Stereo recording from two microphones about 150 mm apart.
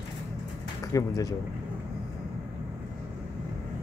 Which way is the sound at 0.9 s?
20° left (ahead or behind).